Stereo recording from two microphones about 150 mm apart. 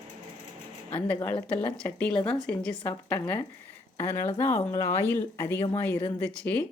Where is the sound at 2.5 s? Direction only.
10° left (ahead or behind).